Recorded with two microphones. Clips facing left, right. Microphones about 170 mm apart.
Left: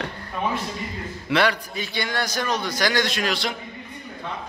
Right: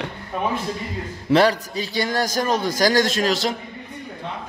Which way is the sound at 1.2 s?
40° right (ahead or behind).